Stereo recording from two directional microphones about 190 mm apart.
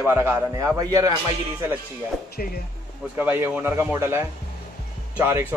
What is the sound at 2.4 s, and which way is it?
Speech, 50° left (ahead or behind).